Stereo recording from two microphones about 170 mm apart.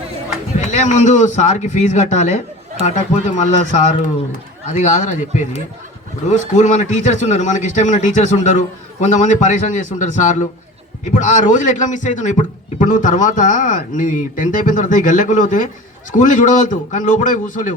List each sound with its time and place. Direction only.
0.7 s a man's voice: 45° left (ahead or behind)